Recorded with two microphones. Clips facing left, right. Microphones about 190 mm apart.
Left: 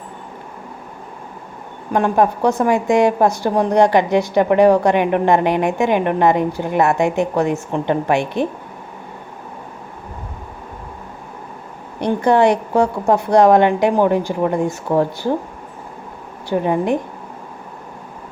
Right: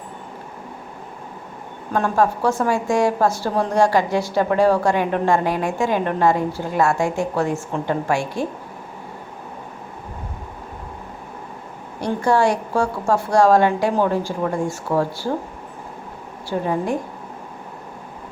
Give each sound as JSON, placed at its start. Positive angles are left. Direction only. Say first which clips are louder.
{"t": 1.9, "sound": "a woman's voice", "louder": "left 3 dB", "side_deg": 15}
{"t": 11.9, "sound": "a woman's voice", "louder": "left 4 dB", "side_deg": 20}
{"t": 16.5, "sound": "a woman's voice", "louder": "left 4 dB", "side_deg": 20}